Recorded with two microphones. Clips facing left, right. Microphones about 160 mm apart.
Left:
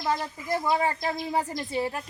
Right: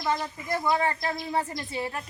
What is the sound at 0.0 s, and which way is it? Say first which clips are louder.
Speech: even; 10° left (ahead or behind).